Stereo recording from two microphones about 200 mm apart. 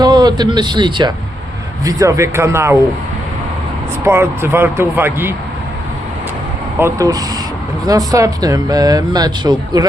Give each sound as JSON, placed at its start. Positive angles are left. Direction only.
{"t": 0.0, "sound": "speech", "side_deg": -20}
{"t": 4.0, "sound": "speech", "side_deg": -10}
{"t": 6.7, "sound": "speech", "side_deg": -15}